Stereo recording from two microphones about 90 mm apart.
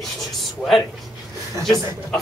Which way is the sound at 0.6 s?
15° left (ahead or behind).